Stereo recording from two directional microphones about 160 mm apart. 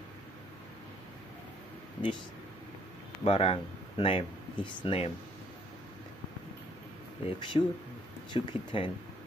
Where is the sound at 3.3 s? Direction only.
35° left (ahead or behind).